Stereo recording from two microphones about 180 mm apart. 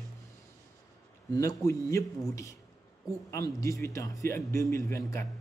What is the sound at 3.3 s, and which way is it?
A man's voice, 15° left (ahead or behind).